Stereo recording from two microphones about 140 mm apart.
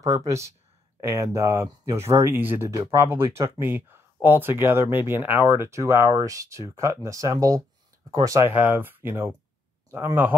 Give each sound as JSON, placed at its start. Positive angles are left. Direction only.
{"t": 0.0, "sound": "speech", "side_deg": -25}